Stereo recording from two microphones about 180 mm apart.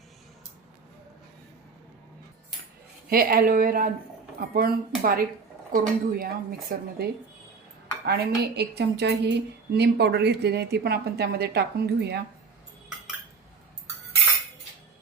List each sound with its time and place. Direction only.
3.1 s a woman's voice: 55° right (ahead or behind)